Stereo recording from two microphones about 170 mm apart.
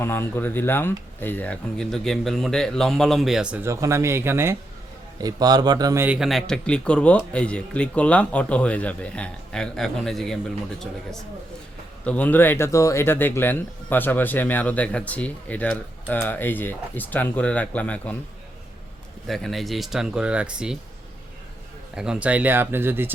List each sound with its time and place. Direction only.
0.0 s a man's voice: 15° left (ahead or behind); by 6.1 s 15° right (ahead or behind)
6.1 s speech: centre (ahead or behind)
12.0 s speech: 10° left (ahead or behind)
19.3 s speech: centre (ahead or behind)
21.9 s speech: 5° right (ahead or behind)